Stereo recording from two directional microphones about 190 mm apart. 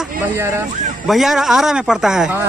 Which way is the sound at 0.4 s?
15° right (ahead or behind).